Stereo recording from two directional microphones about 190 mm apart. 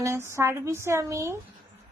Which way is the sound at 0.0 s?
15° right (ahead or behind).